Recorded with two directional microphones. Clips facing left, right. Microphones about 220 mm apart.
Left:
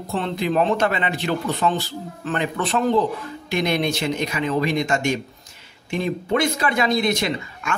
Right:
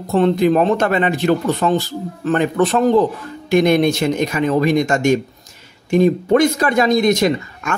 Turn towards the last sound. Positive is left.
turn(degrees=-45)  # may be behind; listen again after turning